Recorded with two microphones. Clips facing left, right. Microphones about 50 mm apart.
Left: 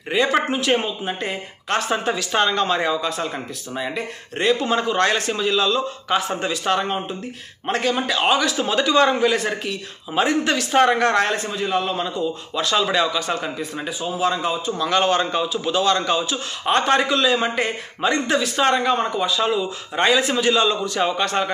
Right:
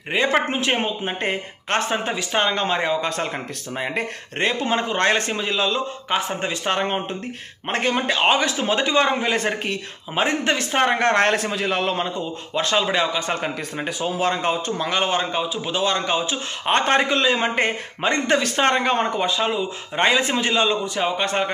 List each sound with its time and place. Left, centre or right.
0.1 s a man's voice: right
2.0 s a man's voice: right
3.0 s a man's voice: right
10.1 s a man's voice: right
11.0 s a man's voice: right
11.3 s a man's voice: right
12.0 s a man's voice: right
13.8 s speech: right
14.9 s a man's voice: centre; by 19.3 s right
19.3 s a man's voice: right